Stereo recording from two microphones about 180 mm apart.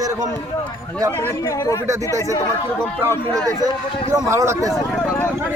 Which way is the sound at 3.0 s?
15° right (ahead or behind).